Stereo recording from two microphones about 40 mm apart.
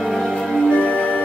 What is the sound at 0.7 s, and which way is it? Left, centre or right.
Music, left.